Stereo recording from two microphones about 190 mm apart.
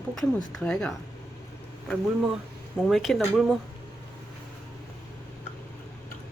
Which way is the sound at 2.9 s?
Centre (ahead or behind).